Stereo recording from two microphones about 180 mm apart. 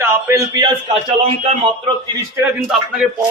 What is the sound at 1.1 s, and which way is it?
Speech, 30° right (ahead or behind).